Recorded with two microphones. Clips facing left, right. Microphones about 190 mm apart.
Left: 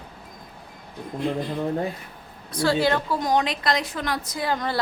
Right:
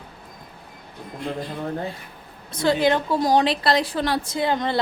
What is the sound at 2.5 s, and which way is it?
Speech, 20° right (ahead or behind).